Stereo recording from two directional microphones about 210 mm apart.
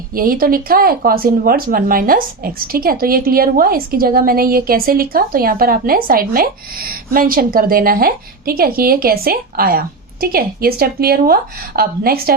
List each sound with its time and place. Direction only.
0.1 s speech: 45° right (ahead or behind)